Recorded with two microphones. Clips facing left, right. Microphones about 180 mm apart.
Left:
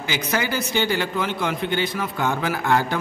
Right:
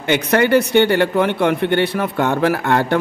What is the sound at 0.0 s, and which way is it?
A man's voice, 60° right (ahead or behind).